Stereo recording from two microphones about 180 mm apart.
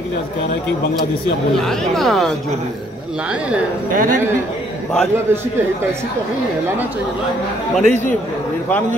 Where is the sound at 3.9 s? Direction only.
50° right (ahead or behind).